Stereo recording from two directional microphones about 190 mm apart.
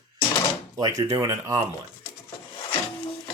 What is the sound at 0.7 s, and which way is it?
Speech, 20° right (ahead or behind).